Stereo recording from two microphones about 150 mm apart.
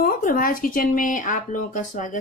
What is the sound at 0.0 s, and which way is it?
Speech, 70° left (ahead or behind).